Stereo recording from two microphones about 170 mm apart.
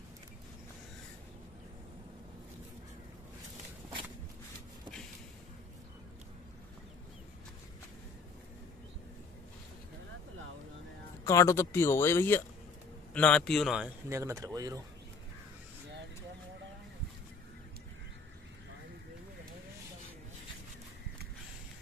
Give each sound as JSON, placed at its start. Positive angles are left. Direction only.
{"t": 11.2, "sound": "a man's voice", "side_deg": 20}
{"t": 14.0, "sound": "speech", "side_deg": -15}